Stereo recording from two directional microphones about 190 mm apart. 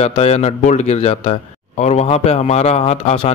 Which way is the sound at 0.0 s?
35° left (ahead or behind).